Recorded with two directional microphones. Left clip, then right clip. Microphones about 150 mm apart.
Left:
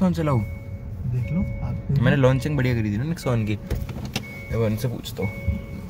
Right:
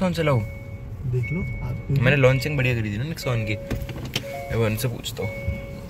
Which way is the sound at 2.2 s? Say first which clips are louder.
Right 2 dB; 40° left (ahead or behind).